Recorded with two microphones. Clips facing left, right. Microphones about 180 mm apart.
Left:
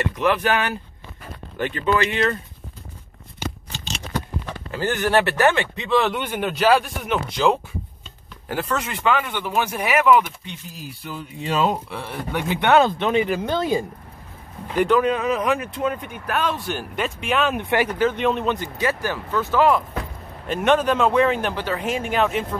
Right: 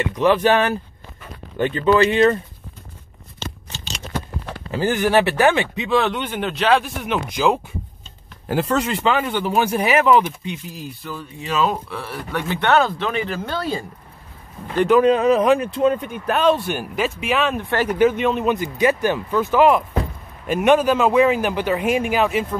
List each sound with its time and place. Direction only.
0.2 s speech: 25° right (ahead or behind)
4.7 s speech: 10° right (ahead or behind)
6.0 s speech: 10° left (ahead or behind)
8.5 s a man's voice: 30° right (ahead or behind)
11.0 s speech: 15° left (ahead or behind)
15.0 s speech: 30° right (ahead or behind)
16.7 s speech: 5° right (ahead or behind)
17.6 s speech: 15° left (ahead or behind)
18.1 s speech: 5° right (ahead or behind)